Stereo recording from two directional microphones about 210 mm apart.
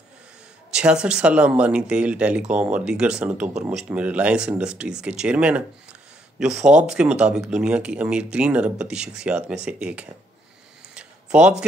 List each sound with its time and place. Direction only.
0.7 s speech: 5° right (ahead or behind)
6.5 s speech: 35° right (ahead or behind)
6.9 s speech: 5° right (ahead or behind)
11.0 s a sound: 5° right (ahead or behind)